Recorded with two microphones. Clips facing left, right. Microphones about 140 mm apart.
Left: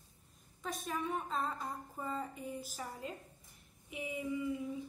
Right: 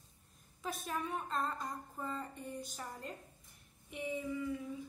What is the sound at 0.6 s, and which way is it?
A woman's voice, centre (ahead or behind).